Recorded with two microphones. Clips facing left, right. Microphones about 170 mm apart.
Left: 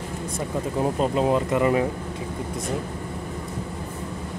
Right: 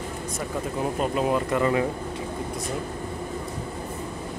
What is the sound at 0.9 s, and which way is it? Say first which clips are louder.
Speech: left 2 dB; 30° left (ahead or behind).